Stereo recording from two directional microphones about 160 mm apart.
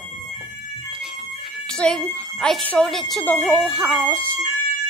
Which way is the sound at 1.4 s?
Centre (ahead or behind).